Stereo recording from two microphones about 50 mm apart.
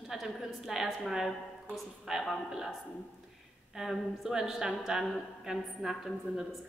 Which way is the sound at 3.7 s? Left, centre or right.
Centre.